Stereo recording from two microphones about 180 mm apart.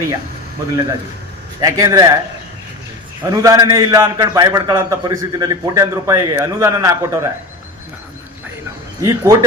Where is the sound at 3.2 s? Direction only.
20° right (ahead or behind).